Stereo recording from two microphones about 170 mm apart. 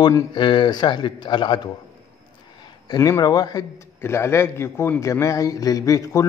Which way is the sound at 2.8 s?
20° left (ahead or behind).